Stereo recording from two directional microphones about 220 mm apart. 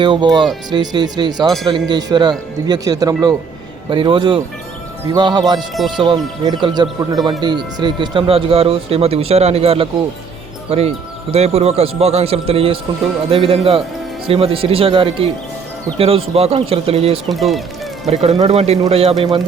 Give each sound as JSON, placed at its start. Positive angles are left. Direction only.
{"t": 0.0, "sound": "speech", "side_deg": -20}
{"t": 17.2, "sound": "speech", "side_deg": 0}
{"t": 18.1, "sound": "speech", "side_deg": -30}